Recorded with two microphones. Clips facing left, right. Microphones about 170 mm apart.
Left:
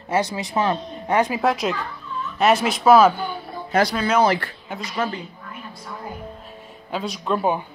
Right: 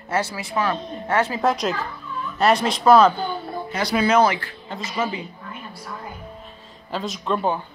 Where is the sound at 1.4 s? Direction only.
Centre (ahead or behind).